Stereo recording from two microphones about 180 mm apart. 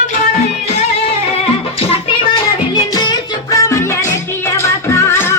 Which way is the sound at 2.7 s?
25° left (ahead or behind).